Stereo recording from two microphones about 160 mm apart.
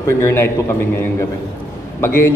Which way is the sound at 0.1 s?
15° left (ahead or behind).